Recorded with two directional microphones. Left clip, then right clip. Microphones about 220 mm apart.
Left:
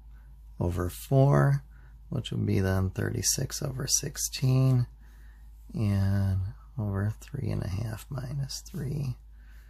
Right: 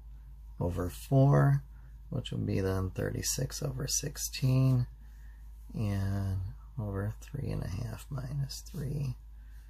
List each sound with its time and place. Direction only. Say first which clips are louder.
0.6 s speech: left 3 dB; 40° left (ahead or behind)